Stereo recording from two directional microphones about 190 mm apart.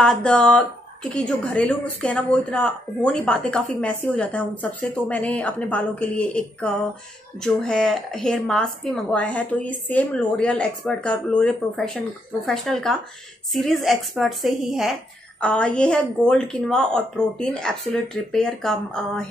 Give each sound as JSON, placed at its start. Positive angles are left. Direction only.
{"t": 0.0, "sound": "a woman's voice", "side_deg": 5}